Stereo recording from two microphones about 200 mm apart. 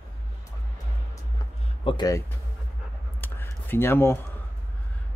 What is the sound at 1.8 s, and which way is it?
Speech, 25° left (ahead or behind).